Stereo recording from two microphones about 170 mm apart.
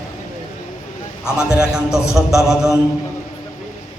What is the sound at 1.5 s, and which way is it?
A man's voice, 5° right (ahead or behind).